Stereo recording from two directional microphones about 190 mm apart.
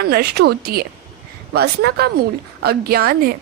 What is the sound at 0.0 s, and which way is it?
A woman's voice, 55° right (ahead or behind).